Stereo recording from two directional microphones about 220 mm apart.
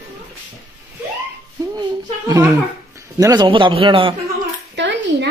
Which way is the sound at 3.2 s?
20° right (ahead or behind).